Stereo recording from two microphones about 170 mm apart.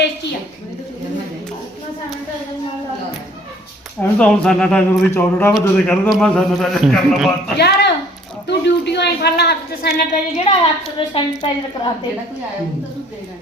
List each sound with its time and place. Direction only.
4.0 s a man's voice: 5° left (ahead or behind)
7.5 s a woman's voice: 80° left
10.3 s a woman's voice: 35° left (ahead or behind)